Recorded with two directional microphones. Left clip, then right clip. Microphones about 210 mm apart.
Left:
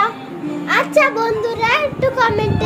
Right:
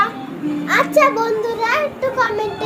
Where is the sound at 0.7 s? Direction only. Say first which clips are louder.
Even; 15° left (ahead or behind).